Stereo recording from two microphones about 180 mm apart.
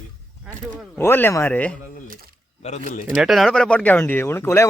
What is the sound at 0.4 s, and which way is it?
Speech, centre (ahead or behind).